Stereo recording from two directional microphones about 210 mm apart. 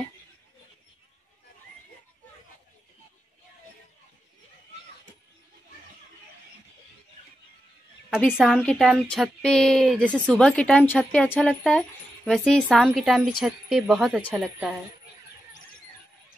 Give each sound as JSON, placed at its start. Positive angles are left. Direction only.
{"t": 8.3, "sound": "speech", "side_deg": 0}